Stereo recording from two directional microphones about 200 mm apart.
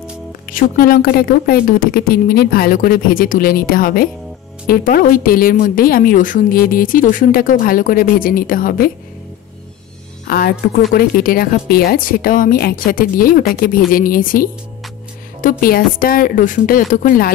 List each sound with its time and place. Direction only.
0.5 s a woman's voice: 45° left (ahead or behind)
10.2 s a woman's voice: 50° left (ahead or behind)
15.6 s a woman's voice: 45° left (ahead or behind)